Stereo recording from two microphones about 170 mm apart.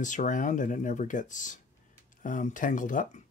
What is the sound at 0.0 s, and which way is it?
Speech, 50° left (ahead or behind).